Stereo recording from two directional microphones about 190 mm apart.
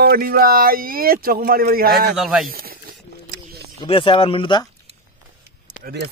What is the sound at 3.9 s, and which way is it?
Speech, 30° left (ahead or behind).